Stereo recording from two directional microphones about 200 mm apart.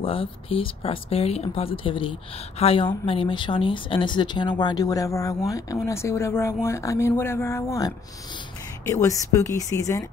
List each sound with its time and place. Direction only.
0.0 s speech: 25° left (ahead or behind)